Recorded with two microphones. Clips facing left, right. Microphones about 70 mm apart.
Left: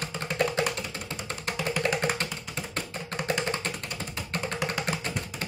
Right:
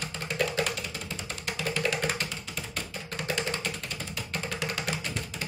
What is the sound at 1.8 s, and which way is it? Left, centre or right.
Music, left.